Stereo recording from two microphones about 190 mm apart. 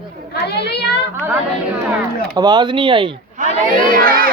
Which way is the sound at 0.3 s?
60° left (ahead or behind).